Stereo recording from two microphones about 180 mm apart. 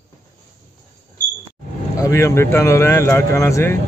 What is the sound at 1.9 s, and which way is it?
Speech, 15° left (ahead or behind).